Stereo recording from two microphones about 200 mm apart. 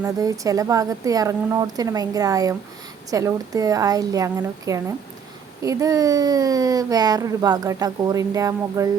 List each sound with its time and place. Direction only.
0.0 s speech: 15° right (ahead or behind)